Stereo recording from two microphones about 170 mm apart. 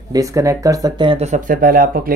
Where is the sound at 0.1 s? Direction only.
20° right (ahead or behind).